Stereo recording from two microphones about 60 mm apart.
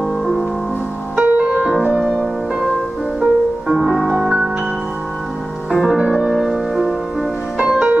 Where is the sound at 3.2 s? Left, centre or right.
Centre.